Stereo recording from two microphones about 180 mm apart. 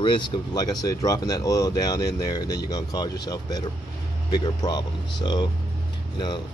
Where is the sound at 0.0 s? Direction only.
25° left (ahead or behind).